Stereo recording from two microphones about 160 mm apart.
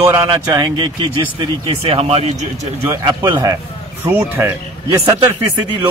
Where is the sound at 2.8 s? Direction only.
20° right (ahead or behind).